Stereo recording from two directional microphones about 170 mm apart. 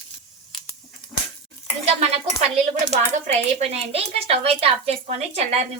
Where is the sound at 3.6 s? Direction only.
40° right (ahead or behind).